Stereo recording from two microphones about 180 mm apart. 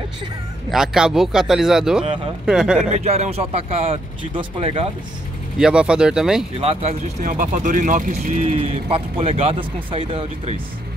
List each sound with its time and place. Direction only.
0.7 s speech: 5° right (ahead or behind)
2.9 s speech: 35° right (ahead or behind)
5.6 s speech: 5° right (ahead or behind)
6.6 s speech: 35° right (ahead or behind)